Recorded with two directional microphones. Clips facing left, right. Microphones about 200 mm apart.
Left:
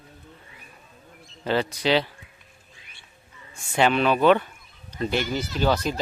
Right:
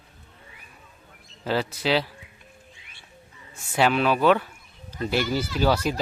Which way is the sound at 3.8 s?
5° right (ahead or behind).